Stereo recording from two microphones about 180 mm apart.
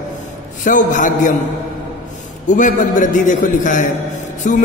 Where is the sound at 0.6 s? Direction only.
45° left (ahead or behind).